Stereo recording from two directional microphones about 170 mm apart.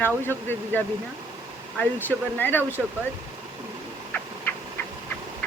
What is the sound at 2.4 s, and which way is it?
Speech, 10° left (ahead or behind).